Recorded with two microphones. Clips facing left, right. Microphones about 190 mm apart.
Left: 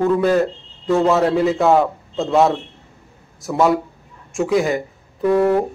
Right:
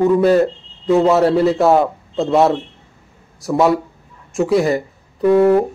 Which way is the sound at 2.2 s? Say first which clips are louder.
Right 2 dB; centre (ahead or behind).